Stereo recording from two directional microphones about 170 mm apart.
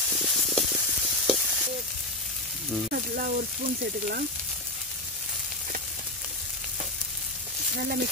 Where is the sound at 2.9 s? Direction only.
50° right (ahead or behind).